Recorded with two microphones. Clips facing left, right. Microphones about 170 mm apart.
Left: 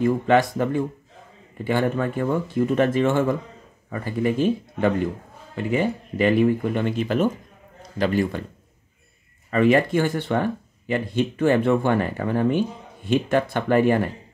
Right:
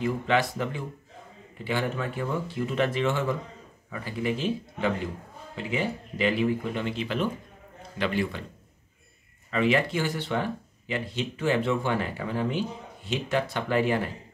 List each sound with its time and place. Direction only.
0.0 s speech: 50° left (ahead or behind)
9.5 s speech: 50° left (ahead or behind)